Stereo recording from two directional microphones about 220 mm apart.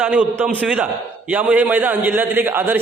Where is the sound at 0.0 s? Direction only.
5° right (ahead or behind).